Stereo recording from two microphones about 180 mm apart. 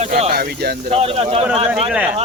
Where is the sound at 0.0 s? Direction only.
40° right (ahead or behind).